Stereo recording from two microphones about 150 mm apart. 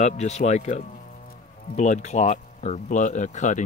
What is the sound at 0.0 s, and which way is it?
Speech, 50° left (ahead or behind).